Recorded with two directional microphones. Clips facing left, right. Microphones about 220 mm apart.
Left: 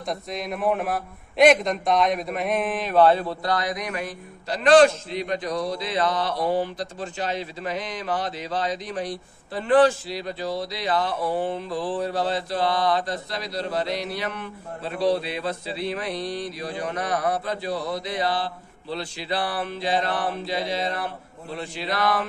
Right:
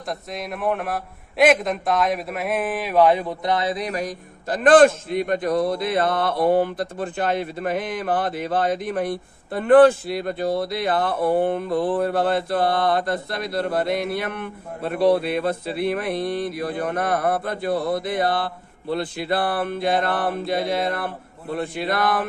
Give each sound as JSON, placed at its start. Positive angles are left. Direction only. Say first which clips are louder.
{"t": 0.0, "sound": "a man's voice", "louder": "even", "side_deg": 0}